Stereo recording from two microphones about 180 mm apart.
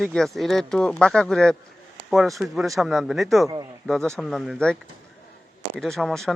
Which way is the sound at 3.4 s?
15° right (ahead or behind).